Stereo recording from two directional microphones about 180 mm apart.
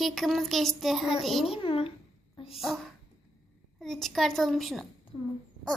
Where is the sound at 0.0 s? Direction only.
Centre (ahead or behind).